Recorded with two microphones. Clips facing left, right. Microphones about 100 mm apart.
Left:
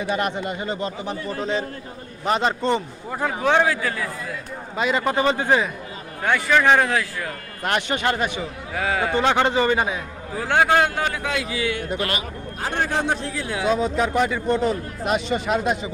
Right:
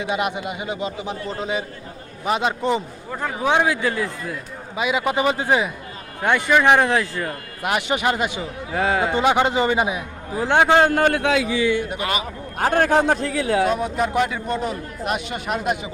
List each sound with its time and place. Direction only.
0.1 s a man's voice: 15° right (ahead or behind)
2.2 s a man's voice: 5° right (ahead or behind)
3.1 s speech: 5° left (ahead or behind)
3.4 s a man's voice: 15° right (ahead or behind)
4.8 s a man's voice: 5° right (ahead or behind); by 7.3 s 25° right (ahead or behind)
7.6 s a man's voice: 10° right (ahead or behind)
8.7 s a man's voice: 25° right (ahead or behind)
10.8 s a man's voice: 55° right (ahead or behind); by 11.3 s 75° right (ahead or behind)
12.5 s a man's voice: 60° right (ahead or behind)
13.3 s speech: 70° right (ahead or behind)
13.8 s speech: 5° right (ahead or behind)